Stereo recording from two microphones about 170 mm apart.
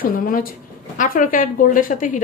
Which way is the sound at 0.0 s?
60° left (ahead or behind).